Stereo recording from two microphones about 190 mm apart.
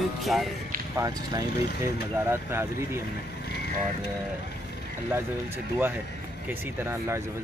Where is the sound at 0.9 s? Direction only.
15° right (ahead or behind).